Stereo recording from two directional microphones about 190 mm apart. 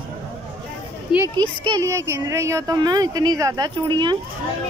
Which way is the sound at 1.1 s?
15° right (ahead or behind).